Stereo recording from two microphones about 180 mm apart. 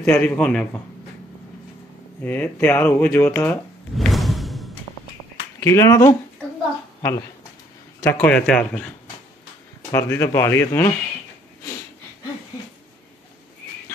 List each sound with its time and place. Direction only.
0.0 s a man's voice: 5° left (ahead or behind)
2.2 s speech: 10° left (ahead or behind)
3.9 s a sound: centre (ahead or behind)
5.6 s speech: 15° left (ahead or behind)
9.8 s speech: 15° left (ahead or behind)